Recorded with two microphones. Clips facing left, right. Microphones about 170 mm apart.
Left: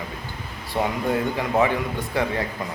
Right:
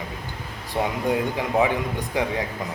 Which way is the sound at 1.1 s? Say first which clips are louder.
Even; 15° right (ahead or behind).